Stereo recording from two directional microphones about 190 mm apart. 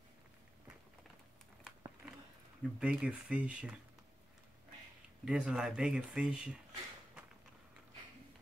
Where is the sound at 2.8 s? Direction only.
5° right (ahead or behind).